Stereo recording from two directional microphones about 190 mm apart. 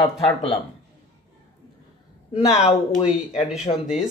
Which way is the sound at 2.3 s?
35° left (ahead or behind).